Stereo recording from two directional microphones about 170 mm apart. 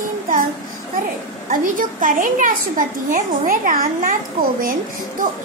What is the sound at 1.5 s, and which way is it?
A child's voice, 50° right (ahead or behind).